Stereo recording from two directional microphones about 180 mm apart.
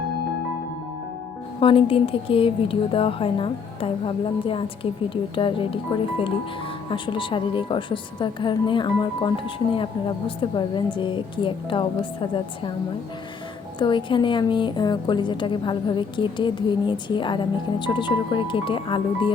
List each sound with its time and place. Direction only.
1.6 s speech: 30° left (ahead or behind)
13.7 s speech: 25° left (ahead or behind)